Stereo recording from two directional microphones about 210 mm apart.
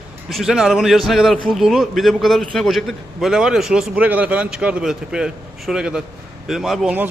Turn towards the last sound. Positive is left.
turn(degrees=-5)  # may be behind; listen again after turning